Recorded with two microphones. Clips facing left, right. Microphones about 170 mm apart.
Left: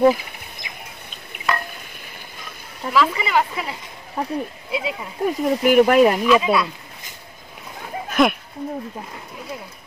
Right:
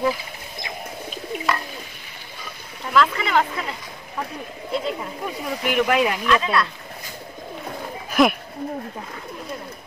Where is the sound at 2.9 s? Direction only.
5° left (ahead or behind).